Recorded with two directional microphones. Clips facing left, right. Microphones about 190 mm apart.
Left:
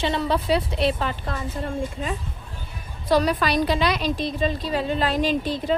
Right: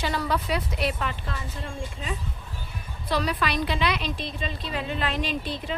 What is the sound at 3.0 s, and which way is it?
A woman's voice, 45° left (ahead or behind).